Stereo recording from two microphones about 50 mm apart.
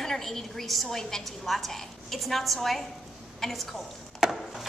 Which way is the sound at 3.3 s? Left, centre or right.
Centre.